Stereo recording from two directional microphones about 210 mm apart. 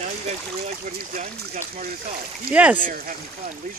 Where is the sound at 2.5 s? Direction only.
5° right (ahead or behind).